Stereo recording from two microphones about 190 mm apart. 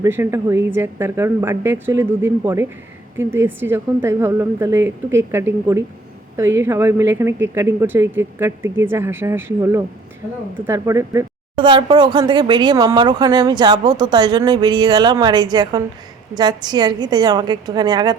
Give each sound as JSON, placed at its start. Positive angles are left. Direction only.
{"t": 0.0, "sound": "a woman's voice", "side_deg": -15}